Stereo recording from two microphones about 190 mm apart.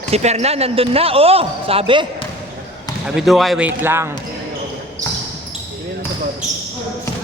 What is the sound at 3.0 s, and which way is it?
Speech, centre (ahead or behind).